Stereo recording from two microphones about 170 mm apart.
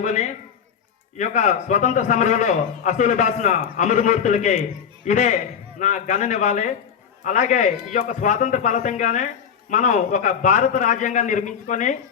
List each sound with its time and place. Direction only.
0.0 s speech: 45° left (ahead or behind)